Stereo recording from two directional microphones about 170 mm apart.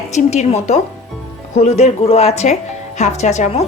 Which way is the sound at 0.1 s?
40° left (ahead or behind).